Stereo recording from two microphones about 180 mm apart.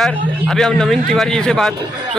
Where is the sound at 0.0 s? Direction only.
5° left (ahead or behind).